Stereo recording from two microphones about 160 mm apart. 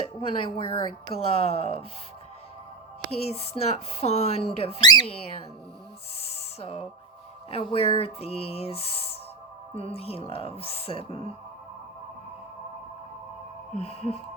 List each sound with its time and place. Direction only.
0.0 s a woman's voice: 35° left (ahead or behind)
3.2 s a woman's voice: 40° left (ahead or behind)
4.8 s speech: 25° left (ahead or behind)
6.2 s a sound: 40° left (ahead or behind)
7.5 s a woman's voice: 35° left (ahead or behind)
13.7 s a woman's voice: 40° left (ahead or behind)